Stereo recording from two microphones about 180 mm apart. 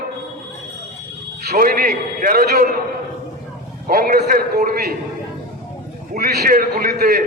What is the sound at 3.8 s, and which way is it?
A man's voice, 50° right (ahead or behind).